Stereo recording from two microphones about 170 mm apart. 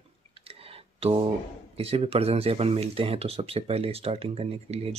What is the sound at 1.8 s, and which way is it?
Speech, 35° right (ahead or behind).